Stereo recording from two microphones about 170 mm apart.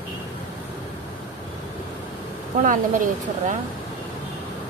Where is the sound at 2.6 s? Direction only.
50° right (ahead or behind).